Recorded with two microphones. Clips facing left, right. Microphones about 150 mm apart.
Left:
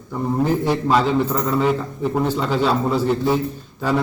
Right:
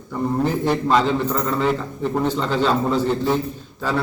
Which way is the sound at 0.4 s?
10° left (ahead or behind).